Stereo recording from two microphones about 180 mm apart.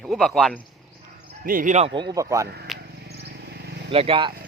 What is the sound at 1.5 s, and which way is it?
Speech, 45° right (ahead or behind).